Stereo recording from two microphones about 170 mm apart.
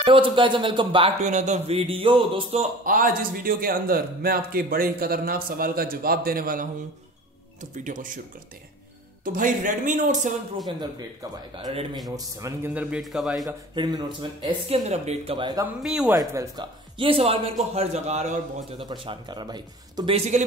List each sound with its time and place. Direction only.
0.0 s speech: 30° right (ahead or behind)
1.2 s speech: 45° right (ahead or behind)
2.8 s a man's voice: 55° right (ahead or behind)
7.8 s speech: 50° right (ahead or behind)
9.2 s speech: 50° right (ahead or behind)
11.5 s speech: 30° right (ahead or behind)
12.7 s a man's voice: 5° right (ahead or behind)
13.7 s speech: 25° right (ahead or behind)
14.4 s speech: 40° right (ahead or behind)
15.8 s a man's voice: 5° right (ahead or behind)
16.2 s speech: 25° right (ahead or behind); by 18.4 s 40° right (ahead or behind)
18.9 s speech: 25° right (ahead or behind)
20.2 s speech: 45° right (ahead or behind)